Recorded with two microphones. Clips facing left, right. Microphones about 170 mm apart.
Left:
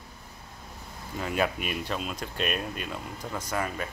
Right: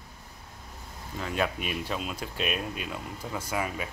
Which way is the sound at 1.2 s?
5° left (ahead or behind).